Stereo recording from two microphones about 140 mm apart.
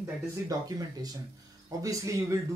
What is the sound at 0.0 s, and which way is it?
Speech, 25° right (ahead or behind).